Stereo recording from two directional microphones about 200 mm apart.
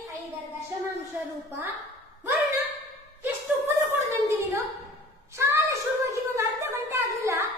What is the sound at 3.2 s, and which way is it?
Chuckle, 10° right (ahead or behind).